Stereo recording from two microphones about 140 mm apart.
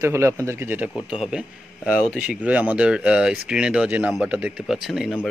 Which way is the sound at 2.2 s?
10° right (ahead or behind).